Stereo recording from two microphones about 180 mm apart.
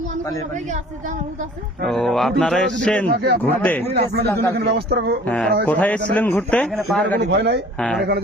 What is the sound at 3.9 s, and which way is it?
A man's voice, 65° right (ahead or behind).